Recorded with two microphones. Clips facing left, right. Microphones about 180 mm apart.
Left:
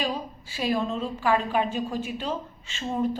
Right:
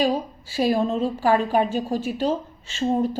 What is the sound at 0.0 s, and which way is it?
A woman's voice, 35° right (ahead or behind).